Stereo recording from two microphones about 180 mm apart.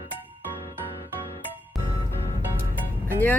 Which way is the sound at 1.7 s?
Centre (ahead or behind).